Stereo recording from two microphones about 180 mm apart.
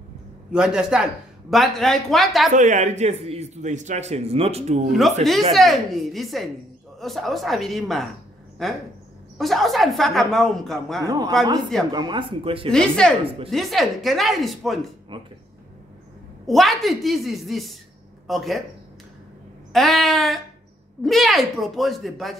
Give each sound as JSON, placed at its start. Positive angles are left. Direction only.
{"t": 0.5, "sound": "speech", "side_deg": -5}
{"t": 2.5, "sound": "a man's voice", "side_deg": -45}
{"t": 5.5, "sound": "speech", "side_deg": 0}
{"t": 11.0, "sound": "speech", "side_deg": -20}
{"t": 12.7, "sound": "speech", "side_deg": 5}
{"t": 15.1, "sound": "speech", "side_deg": -25}
{"t": 16.4, "sound": "speech", "side_deg": 0}
{"t": 19.7, "sound": "speech", "side_deg": 0}